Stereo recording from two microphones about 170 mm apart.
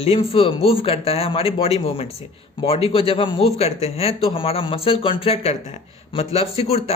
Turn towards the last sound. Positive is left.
turn(degrees=35)  # may be behind; listen again after turning